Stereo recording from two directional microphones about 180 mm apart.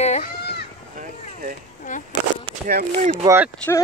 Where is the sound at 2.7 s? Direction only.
60° right (ahead or behind).